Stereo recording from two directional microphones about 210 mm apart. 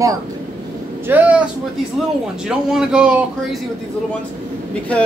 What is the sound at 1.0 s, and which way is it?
Speech, 10° right (ahead or behind).